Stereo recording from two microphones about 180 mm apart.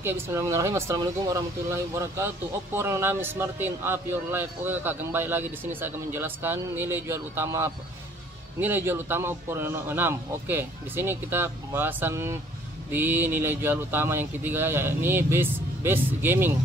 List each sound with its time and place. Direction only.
0.0 s speech: 15° right (ahead or behind)